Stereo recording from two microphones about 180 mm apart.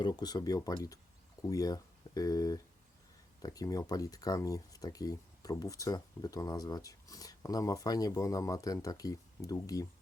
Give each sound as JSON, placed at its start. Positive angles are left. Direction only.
{"t": 0.0, "sound": "speech", "side_deg": 20}